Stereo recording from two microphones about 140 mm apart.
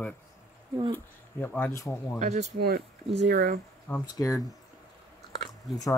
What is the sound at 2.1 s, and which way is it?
Speech, 55° right (ahead or behind).